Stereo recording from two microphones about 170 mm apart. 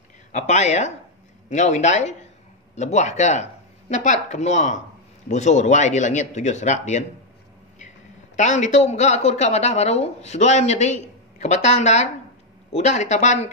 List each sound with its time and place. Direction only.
0.3 s a woman's voice: 40° left (ahead or behind)
8.4 s a woman's voice: 45° left (ahead or behind)